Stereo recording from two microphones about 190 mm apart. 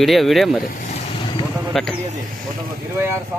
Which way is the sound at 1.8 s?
Centre (ahead or behind).